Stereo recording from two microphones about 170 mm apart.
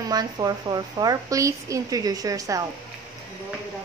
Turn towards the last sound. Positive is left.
turn(degrees=-20)  # may be behind; listen again after turning